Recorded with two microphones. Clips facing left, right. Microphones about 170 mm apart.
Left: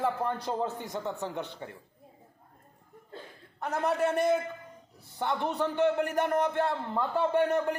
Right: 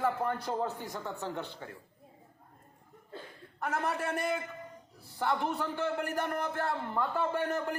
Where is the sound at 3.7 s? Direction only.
20° left (ahead or behind).